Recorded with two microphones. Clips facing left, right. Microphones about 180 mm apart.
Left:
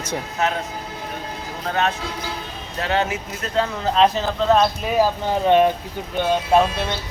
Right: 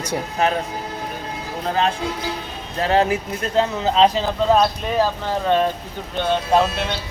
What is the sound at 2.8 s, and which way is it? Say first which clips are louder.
Speech: right 4 dB; 35° right (ahead or behind).